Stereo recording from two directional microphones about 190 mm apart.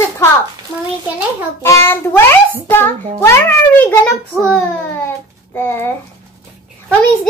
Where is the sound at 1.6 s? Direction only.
15° left (ahead or behind).